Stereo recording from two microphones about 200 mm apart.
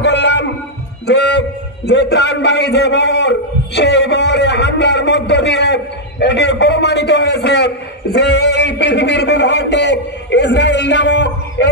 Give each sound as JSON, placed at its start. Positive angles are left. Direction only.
{"t": 0.0, "sound": "music", "side_deg": 60}
{"t": 1.0, "sound": "a man's voice", "side_deg": 60}